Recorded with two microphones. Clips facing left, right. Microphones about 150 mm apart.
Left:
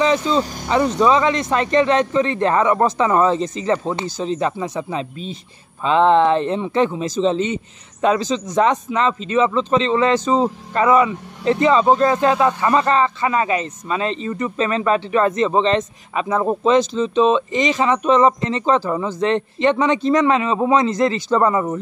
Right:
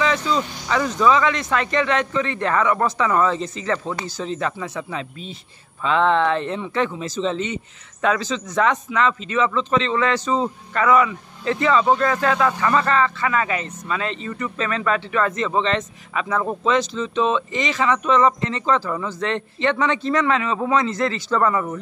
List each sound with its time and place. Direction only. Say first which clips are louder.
0.0 s speech: left 4 dB; 30° left (ahead or behind)